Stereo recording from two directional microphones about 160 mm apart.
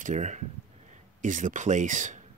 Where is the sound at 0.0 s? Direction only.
50° right (ahead or behind).